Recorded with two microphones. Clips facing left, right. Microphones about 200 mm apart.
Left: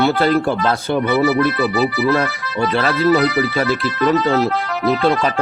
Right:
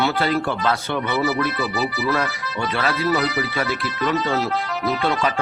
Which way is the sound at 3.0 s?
60° left (ahead or behind).